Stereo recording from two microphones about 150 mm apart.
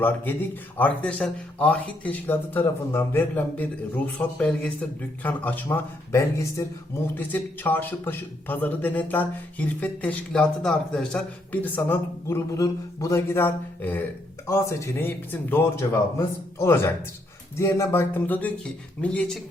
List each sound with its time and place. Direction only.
0.8 s a man's voice: 10° left (ahead or behind)